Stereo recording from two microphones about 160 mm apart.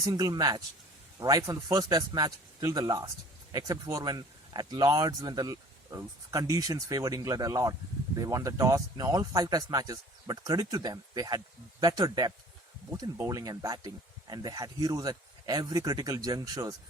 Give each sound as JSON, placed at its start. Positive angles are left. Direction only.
{"t": 0.0, "sound": "speech", "side_deg": -25}